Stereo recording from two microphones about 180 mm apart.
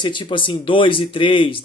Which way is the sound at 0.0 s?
25° left (ahead or behind).